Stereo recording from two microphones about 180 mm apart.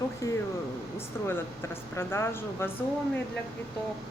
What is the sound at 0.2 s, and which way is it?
Speech, 15° left (ahead or behind).